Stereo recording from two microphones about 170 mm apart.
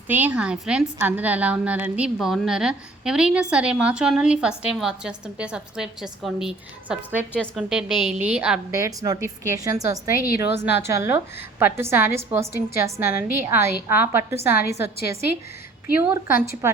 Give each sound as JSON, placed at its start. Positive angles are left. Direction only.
{"t": 0.1, "sound": "a woman's voice", "side_deg": -10}
{"t": 8.7, "sound": "a woman's voice", "side_deg": -20}
{"t": 16.2, "sound": "a woman's voice", "side_deg": -15}